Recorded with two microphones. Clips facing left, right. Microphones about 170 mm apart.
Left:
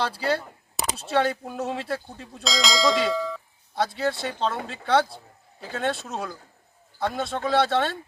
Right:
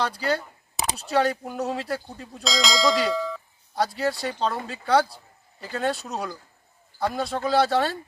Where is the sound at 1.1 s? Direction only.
Centre (ahead or behind).